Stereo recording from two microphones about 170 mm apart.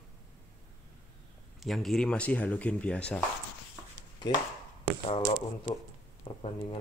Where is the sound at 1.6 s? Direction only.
Centre (ahead or behind).